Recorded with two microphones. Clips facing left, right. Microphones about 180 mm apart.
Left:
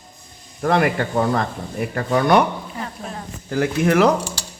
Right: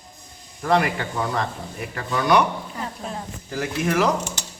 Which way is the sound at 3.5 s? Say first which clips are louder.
Left 6 dB; 55° left (ahead or behind).